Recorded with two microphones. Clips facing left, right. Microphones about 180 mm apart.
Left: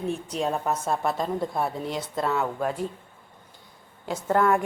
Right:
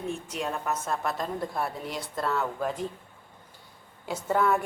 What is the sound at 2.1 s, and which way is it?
Speech, 5° left (ahead or behind).